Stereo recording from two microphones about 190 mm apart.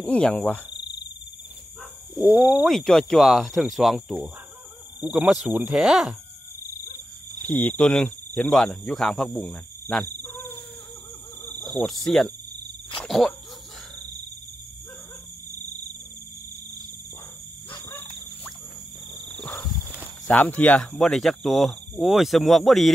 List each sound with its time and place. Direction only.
0.0 s speech: 5° left (ahead or behind)
2.2 s speech: 5° right (ahead or behind)
7.4 s speech: 10° left (ahead or behind)
11.4 s speech: 5° left (ahead or behind)
17.8 s squeal: 10° left (ahead or behind)
19.3 s horse: 5° left (ahead or behind)
20.2 s speech: 10° left (ahead or behind)